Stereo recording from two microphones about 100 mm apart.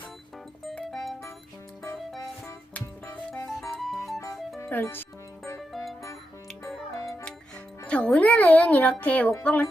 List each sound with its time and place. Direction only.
0.9 s music: centre (ahead or behind)
2.8 s music: 30° left (ahead or behind)
3.4 s music: centre (ahead or behind)
4.6 s speech: 25° left (ahead or behind)
5.7 s music: centre (ahead or behind)
7.9 s a child's voice: 10° left (ahead or behind)